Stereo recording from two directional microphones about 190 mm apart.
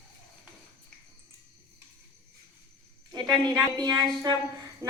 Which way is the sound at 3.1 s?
20° right (ahead or behind).